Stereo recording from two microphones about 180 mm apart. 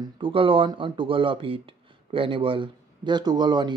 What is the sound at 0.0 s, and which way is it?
A man's voice, 30° right (ahead or behind).